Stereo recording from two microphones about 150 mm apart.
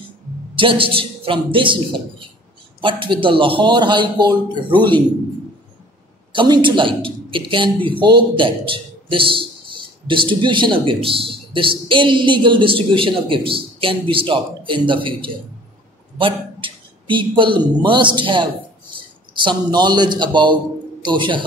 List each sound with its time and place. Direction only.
0.6 s a man's voice: 35° right (ahead or behind)
6.3 s a man's voice: 30° right (ahead or behind)